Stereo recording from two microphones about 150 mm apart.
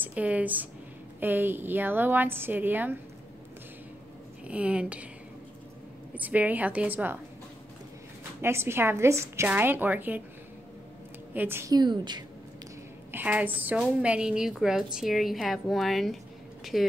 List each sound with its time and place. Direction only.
0.0 s a woman's voice: 10° right (ahead or behind)
4.5 s a woman's voice: 10° right (ahead or behind)
6.1 s a woman's voice: 10° right (ahead or behind)
8.4 s a woman's voice: 15° right (ahead or behind)
11.3 s a woman's voice: 15° right (ahead or behind)
11.7 s a woman's voice: 30° right (ahead or behind)
13.1 s a woman's voice: 10° right (ahead or behind)